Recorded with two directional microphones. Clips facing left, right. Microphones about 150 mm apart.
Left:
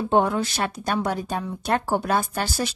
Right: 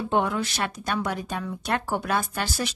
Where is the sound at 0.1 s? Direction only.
35° left (ahead or behind).